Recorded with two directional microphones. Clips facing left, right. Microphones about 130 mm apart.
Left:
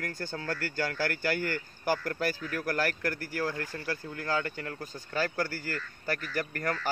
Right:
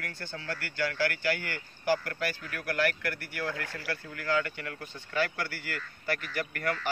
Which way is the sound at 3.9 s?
30° left (ahead or behind).